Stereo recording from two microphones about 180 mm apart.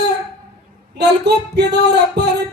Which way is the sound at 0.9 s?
70° right (ahead or behind).